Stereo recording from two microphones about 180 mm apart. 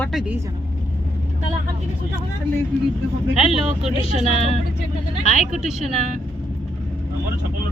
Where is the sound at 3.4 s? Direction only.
40° right (ahead or behind).